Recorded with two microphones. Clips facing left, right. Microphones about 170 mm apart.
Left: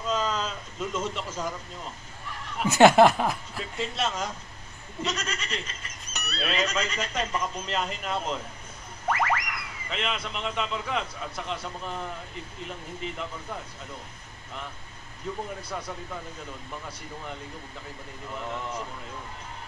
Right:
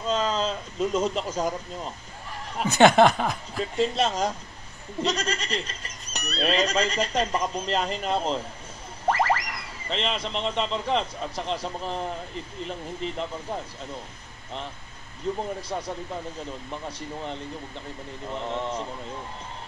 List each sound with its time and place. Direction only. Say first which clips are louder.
0.0 s a sound: right 3 dB; 30° right (ahead or behind)
2.7 s chuckle: even; 5° left (ahead or behind)
3.7 s speech: right 6 dB; 35° right (ahead or behind)
5.8 s music: right 3 dB; 35° right (ahead or behind)
6.4 s speech: right 5 dB; 35° right (ahead or behind)
15.7 s speech: right 4 dB; 30° right (ahead or behind)
18.3 s speech: right 4 dB; 30° right (ahead or behind)